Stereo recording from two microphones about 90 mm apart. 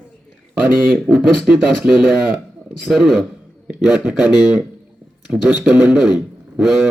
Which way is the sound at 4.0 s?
20° right (ahead or behind).